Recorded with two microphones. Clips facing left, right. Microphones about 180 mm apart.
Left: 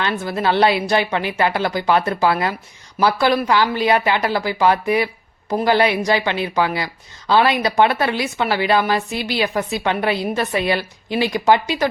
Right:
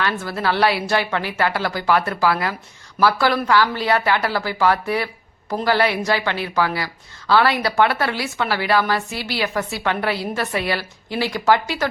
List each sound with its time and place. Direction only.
0.0 s a woman's voice: 20° left (ahead or behind)